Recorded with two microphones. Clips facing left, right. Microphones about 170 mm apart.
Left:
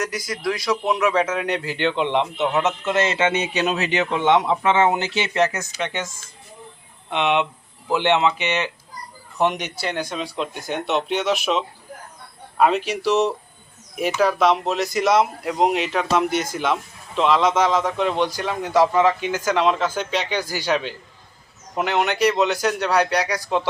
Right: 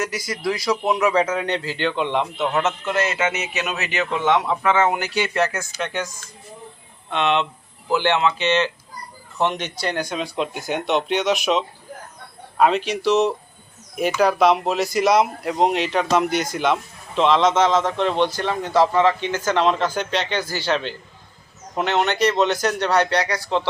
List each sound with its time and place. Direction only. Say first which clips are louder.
0.0 s speech: even; centre (ahead or behind)
1.2 s a man's voice: right 1 dB; 5° left (ahead or behind)
1.6 s a man's voice: left 1 dB; 20° left (ahead or behind)
7.1 s a man's voice: even; 15° left (ahead or behind)
9.8 s a man's voice: right 2 dB; centre (ahead or behind)